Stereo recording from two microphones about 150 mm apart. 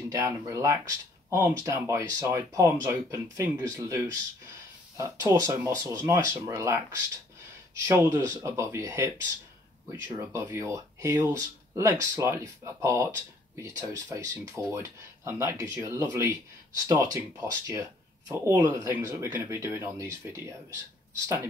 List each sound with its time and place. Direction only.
0.1 s speech: 20° right (ahead or behind)
5.3 s speech: 20° right (ahead or behind)